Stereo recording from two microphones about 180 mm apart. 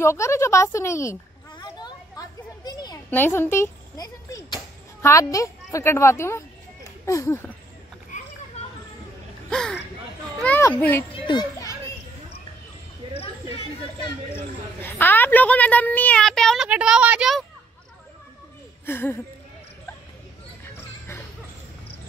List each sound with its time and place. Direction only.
0.0 s a sound: 15° left (ahead or behind)
3.1 s a woman's voice: 10° left (ahead or behind)
9.5 s a child's voice: 5° left (ahead or behind)
11.2 s a child's voice: 25° left (ahead or behind)
14.3 s a woman's voice: 10° left (ahead or behind)
18.9 s a woman's voice: 10° left (ahead or behind)